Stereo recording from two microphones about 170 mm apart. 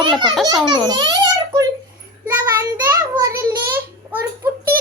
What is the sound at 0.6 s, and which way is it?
Speech, 25° right (ahead or behind).